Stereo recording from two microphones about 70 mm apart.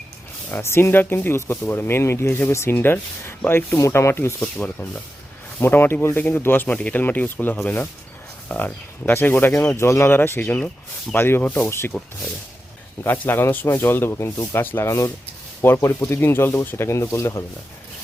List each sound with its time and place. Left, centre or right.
0.5 s speech: left
4.4 s speech: centre
5.5 s speech: left
10.4 s speech: left
11.1 s speech: left
11.9 s speech: centre
13.1 s speech: left
14.8 s speech: left